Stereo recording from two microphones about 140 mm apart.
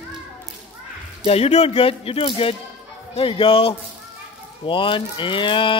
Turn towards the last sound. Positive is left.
turn(degrees=35)  # may be behind; listen again after turning